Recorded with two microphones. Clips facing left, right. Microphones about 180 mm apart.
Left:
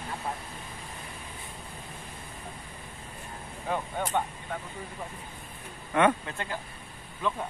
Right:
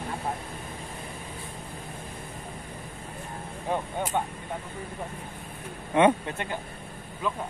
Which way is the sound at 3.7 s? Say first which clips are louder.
Right 1 dB; 15° right (ahead or behind).